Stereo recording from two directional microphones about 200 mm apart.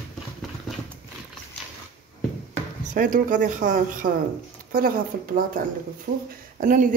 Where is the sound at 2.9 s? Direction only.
40° right (ahead or behind).